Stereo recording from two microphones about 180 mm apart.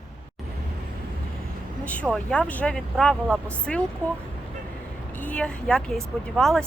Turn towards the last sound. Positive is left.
turn(degrees=5)  # may be behind; listen again after turning